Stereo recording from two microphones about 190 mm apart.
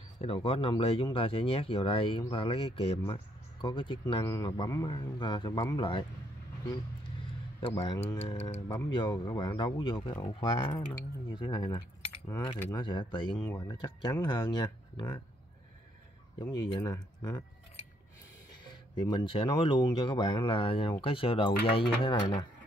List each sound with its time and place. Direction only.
0.2 s a man's voice: 30° left (ahead or behind)
8.2 s speech: 30° left (ahead or behind)
9.1 s a man's voice: 20° left (ahead or behind)
16.3 s a man's voice: 25° left (ahead or behind)
18.9 s a man's voice: 25° left (ahead or behind)